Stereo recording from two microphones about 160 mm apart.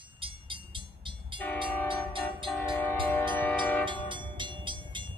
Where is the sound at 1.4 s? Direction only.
10° left (ahead or behind).